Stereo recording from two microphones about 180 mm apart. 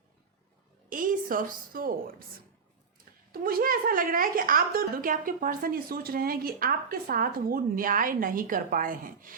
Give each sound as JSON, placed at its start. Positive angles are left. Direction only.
{"t": 0.9, "sound": "a woman's voice", "side_deg": -50}
{"t": 3.3, "sound": "a woman's voice", "side_deg": -55}